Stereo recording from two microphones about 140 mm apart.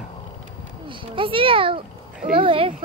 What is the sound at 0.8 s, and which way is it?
A child's voice, 35° right (ahead or behind).